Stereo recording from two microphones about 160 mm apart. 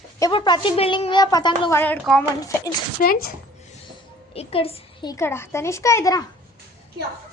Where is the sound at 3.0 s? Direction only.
60° left (ahead or behind).